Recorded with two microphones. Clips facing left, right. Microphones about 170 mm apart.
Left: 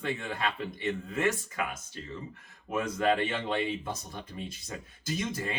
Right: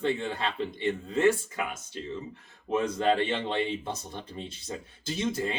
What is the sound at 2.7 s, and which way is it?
Speech, 30° right (ahead or behind).